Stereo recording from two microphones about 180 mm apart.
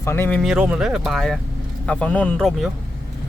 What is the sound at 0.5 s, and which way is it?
Speech, 5° right (ahead or behind).